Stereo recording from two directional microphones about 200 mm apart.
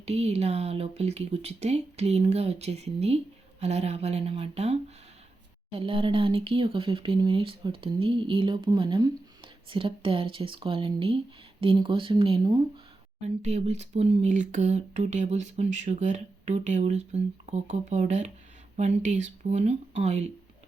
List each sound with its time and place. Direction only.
0.0 s speech: 30° right (ahead or behind)
13.2 s speech: 35° right (ahead or behind)